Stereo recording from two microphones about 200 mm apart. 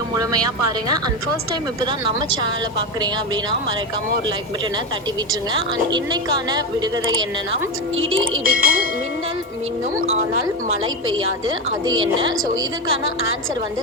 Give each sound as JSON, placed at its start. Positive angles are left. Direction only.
{"t": 0.2, "sound": "speech", "side_deg": -20}
{"t": 5.9, "sound": "speech", "side_deg": -20}
{"t": 7.9, "sound": "speech", "side_deg": -85}
{"t": 8.4, "sound": "speech", "side_deg": -45}
{"t": 11.9, "sound": "speech", "side_deg": -20}